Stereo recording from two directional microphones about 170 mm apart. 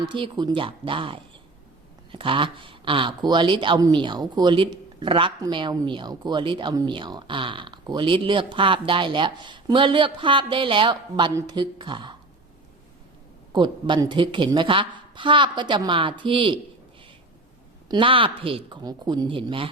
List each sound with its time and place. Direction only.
0.1 s speech: 25° right (ahead or behind)
13.5 s speech: 25° right (ahead or behind)
17.8 s speech: 30° right (ahead or behind)